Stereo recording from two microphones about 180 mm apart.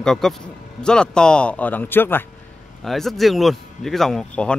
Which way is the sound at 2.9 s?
Centre (ahead or behind).